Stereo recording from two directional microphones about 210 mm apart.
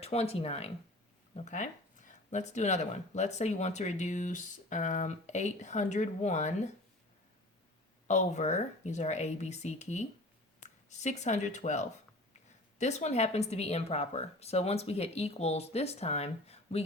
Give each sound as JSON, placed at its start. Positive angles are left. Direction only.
{"t": 0.0, "sound": "speech", "side_deg": 30}
{"t": 8.0, "sound": "speech", "side_deg": 35}